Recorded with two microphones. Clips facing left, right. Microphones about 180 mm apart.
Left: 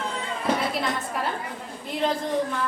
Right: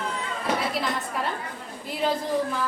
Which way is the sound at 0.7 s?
Centre (ahead or behind).